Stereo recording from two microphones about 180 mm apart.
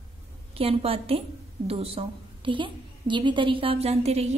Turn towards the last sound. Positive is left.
turn(degrees=-35)  # may be behind; listen again after turning